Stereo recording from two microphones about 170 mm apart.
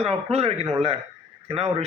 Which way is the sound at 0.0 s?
35° right (ahead or behind).